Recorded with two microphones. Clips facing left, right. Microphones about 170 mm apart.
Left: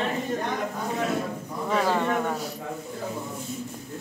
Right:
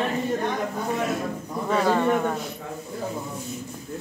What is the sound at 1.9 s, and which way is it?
Speech, 10° right (ahead or behind).